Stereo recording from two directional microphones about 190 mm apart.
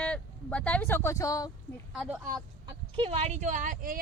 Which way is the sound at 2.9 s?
30° right (ahead or behind).